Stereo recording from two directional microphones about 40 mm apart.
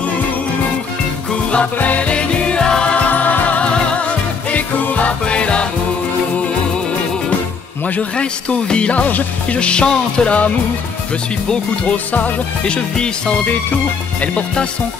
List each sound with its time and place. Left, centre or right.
1.3 s music: left
3.1 s music: left
4.5 s music: left
5.2 s music: left
7.8 s speech: left
12.1 s speech: left
12.6 s speech: left